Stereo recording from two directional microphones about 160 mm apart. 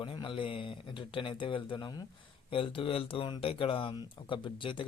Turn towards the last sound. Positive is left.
turn(degrees=30)  # may be behind; listen again after turning